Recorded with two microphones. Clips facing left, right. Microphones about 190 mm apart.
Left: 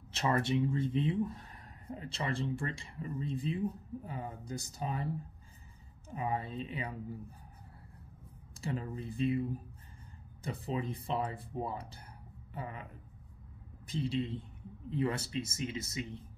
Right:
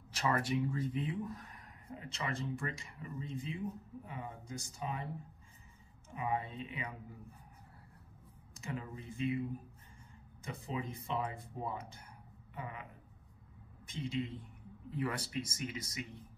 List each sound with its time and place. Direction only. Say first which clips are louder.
0.1 s speech: left 3 dB; 25° left (ahead or behind)
6.0 s speech: left 1 dB; 35° left (ahead or behind)
8.5 s speech: left 5 dB; 35° left (ahead or behind)
10.4 s speech: left 4 dB; 35° left (ahead or behind)
13.8 s speech: left 4 dB; 35° left (ahead or behind)